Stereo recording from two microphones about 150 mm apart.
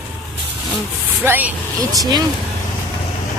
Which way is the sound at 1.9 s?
25° right (ahead or behind).